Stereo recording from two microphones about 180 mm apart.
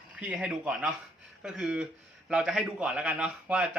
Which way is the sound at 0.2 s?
5° right (ahead or behind).